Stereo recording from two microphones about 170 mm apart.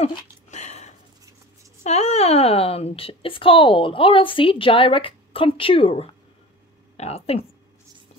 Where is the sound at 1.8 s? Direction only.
40° left (ahead or behind).